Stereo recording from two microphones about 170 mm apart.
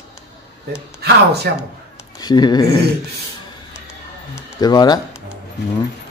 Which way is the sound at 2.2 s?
25° left (ahead or behind).